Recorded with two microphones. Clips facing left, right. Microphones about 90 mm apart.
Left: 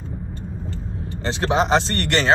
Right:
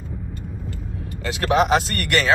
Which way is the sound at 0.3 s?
30° left (ahead or behind).